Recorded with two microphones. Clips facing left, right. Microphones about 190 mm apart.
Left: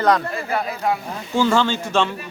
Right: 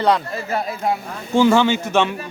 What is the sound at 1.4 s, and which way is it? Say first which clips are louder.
Speech: right 4 dB; 15° right (ahead or behind).